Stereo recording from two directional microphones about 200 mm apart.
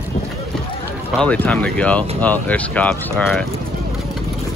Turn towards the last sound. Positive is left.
turn(degrees=5)  # may be behind; listen again after turning